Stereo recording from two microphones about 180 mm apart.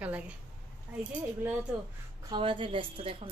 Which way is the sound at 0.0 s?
5° right (ahead or behind).